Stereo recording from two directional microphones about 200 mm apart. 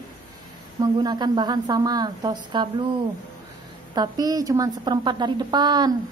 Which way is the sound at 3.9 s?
20° right (ahead or behind).